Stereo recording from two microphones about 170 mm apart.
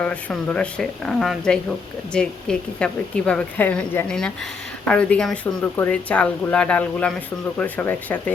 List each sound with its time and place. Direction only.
0.0 s a woman's voice: 5° left (ahead or behind)